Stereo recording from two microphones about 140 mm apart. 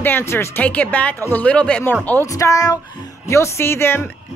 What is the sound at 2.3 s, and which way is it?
Speech, 25° left (ahead or behind).